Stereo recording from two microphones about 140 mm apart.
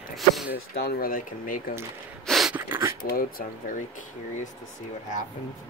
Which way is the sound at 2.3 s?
Centre (ahead or behind).